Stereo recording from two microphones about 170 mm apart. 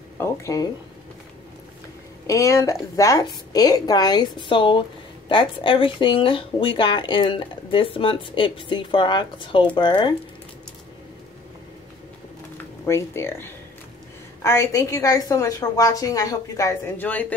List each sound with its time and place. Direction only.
0.2 s speech: 20° left (ahead or behind)
2.2 s speech: 15° left (ahead or behind)
12.8 s speech: 15° left (ahead or behind)